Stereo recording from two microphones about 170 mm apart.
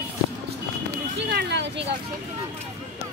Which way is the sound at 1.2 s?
85° right.